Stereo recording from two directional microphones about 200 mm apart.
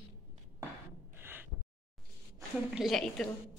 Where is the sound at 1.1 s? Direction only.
10° right (ahead or behind).